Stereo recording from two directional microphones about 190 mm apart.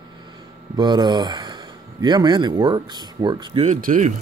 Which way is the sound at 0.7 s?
20° right (ahead or behind).